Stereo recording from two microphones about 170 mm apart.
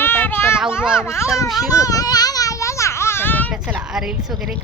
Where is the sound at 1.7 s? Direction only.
20° left (ahead or behind).